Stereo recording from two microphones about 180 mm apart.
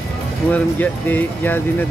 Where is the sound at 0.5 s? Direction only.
10° left (ahead or behind).